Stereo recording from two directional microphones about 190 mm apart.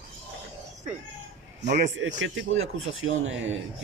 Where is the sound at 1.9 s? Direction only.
80° right.